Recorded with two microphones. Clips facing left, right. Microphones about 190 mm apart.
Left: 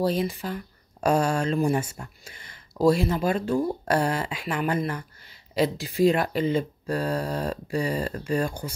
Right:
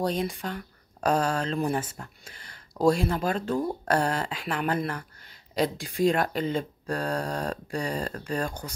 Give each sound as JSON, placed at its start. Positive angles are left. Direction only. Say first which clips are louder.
{"t": 0.0, "sound": "speech", "louder": "left 3 dB", "side_deg": 5}
{"t": 2.3, "sound": "a sound", "louder": "left 1 dB", "side_deg": -40}
{"t": 3.0, "sound": "speech", "louder": "left 3 dB", "side_deg": 5}